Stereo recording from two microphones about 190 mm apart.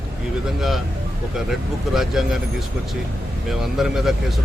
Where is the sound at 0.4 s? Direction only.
Centre (ahead or behind).